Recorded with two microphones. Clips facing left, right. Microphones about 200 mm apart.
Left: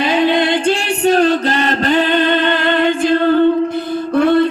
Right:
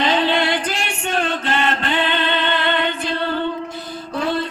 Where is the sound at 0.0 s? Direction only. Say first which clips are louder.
Left 5 dB; 10° left (ahead or behind); by 3.1 s 45° left (ahead or behind).